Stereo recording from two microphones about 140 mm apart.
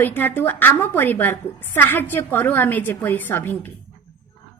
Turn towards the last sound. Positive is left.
turn(degrees=15)  # may be behind; listen again after turning